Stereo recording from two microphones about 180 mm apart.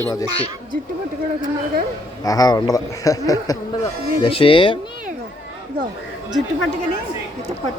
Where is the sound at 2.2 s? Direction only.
20° left (ahead or behind).